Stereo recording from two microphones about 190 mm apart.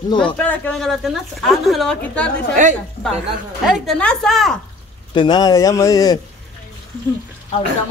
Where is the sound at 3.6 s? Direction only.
Centre (ahead or behind).